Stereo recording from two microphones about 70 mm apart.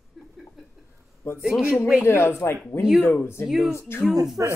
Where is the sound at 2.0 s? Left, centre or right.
Left.